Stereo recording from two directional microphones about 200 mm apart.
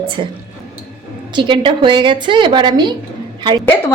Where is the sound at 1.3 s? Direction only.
25° right (ahead or behind).